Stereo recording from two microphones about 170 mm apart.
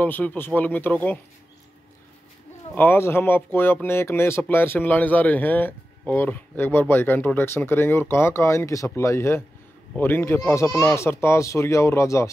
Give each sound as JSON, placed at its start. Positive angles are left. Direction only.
{"t": 0.0, "sound": "speech", "side_deg": 10}
{"t": 2.7, "sound": "speech", "side_deg": 10}